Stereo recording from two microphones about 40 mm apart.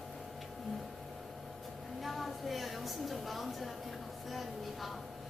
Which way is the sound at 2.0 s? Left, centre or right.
Centre.